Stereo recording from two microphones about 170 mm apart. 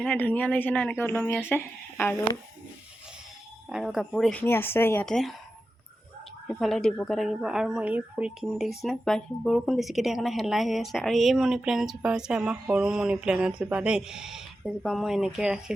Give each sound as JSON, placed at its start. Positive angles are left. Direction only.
{"t": 0.0, "sound": "a woman's voice", "side_deg": 5}
{"t": 3.7, "sound": "a woman's voice", "side_deg": 0}
{"t": 6.5, "sound": "a woman's voice", "side_deg": 0}